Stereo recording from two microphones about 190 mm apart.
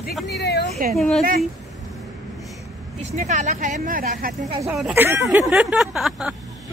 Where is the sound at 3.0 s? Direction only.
40° right (ahead or behind).